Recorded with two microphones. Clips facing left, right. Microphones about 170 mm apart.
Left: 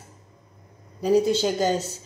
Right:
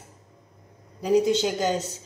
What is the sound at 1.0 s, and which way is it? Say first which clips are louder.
Speech: left 1 dB; 20° right (ahead or behind).